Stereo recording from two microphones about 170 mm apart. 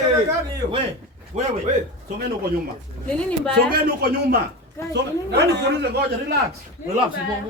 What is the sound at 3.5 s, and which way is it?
Speech, 65° right (ahead or behind).